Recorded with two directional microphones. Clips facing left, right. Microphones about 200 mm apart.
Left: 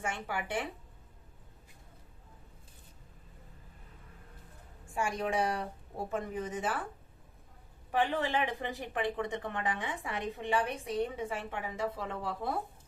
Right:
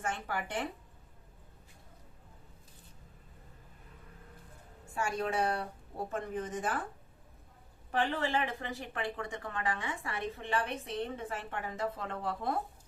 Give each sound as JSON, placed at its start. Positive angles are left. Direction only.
{"t": 0.0, "sound": "speech", "side_deg": 10}
{"t": 4.9, "sound": "speech", "side_deg": 15}
{"t": 7.9, "sound": "speech", "side_deg": 15}